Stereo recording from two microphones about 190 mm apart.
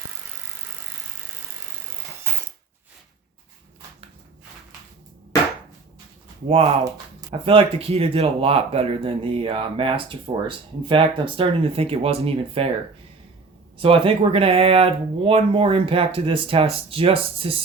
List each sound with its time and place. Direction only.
7.3 s speech: 30° right (ahead or behind)
13.7 s speech: 30° right (ahead or behind)